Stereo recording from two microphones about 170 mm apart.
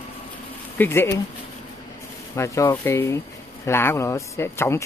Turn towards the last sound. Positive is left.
turn(degrees=15)  # may be behind; listen again after turning